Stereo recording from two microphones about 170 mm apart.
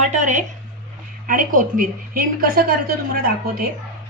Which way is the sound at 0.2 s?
45° right (ahead or behind).